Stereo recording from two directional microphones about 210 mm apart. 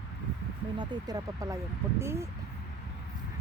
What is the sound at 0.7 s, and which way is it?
Speech, 20° right (ahead or behind).